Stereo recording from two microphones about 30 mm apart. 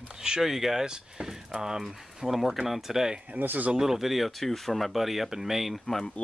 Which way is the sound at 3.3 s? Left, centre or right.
Right.